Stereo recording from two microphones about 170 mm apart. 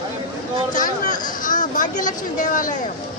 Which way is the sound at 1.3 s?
50° left (ahead or behind).